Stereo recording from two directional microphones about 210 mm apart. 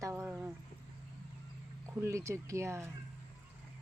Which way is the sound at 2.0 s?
15° right (ahead or behind).